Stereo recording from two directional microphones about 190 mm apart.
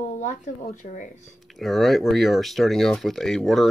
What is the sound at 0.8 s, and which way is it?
Speech, 40° left (ahead or behind).